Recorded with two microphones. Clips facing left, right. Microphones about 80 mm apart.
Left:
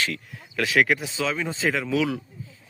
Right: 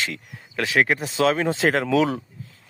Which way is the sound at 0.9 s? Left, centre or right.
Right.